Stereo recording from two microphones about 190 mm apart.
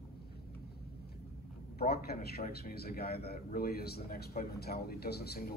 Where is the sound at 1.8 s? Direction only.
55° left (ahead or behind).